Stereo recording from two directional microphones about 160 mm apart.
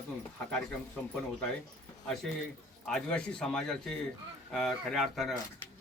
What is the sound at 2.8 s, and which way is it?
Speech, 5° left (ahead or behind).